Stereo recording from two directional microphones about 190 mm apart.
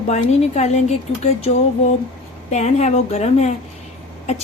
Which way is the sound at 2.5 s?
35° left (ahead or behind).